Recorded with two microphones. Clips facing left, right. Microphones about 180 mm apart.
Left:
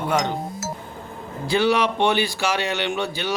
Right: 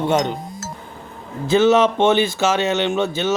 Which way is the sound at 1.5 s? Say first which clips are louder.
Right 6 dB; 15° left (ahead or behind).